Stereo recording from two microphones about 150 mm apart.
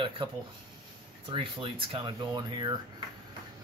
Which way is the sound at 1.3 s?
35° right (ahead or behind).